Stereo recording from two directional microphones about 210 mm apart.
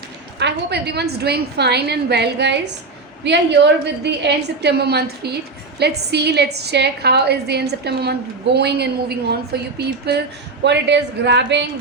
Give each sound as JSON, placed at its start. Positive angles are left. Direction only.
{"t": 0.3, "sound": "a woman's voice", "side_deg": -55}